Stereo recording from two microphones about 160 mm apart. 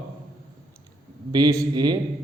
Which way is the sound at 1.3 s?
25° right (ahead or behind).